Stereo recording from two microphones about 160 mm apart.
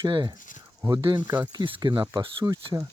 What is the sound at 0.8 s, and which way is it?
Speech, 30° right (ahead or behind).